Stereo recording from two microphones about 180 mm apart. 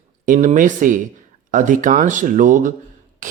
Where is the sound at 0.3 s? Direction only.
45° right (ahead or behind).